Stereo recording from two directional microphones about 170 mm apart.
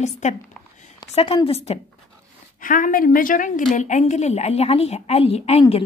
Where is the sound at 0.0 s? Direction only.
45° left (ahead or behind).